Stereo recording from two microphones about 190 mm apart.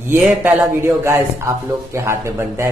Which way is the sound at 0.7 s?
15° right (ahead or behind).